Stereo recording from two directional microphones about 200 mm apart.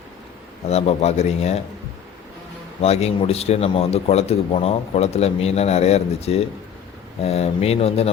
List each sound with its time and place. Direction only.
0.7 s a man's voice: 30° left (ahead or behind)
2.8 s a man's voice: 30° left (ahead or behind)